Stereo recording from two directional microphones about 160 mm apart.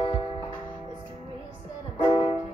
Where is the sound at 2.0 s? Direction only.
35° left (ahead or behind).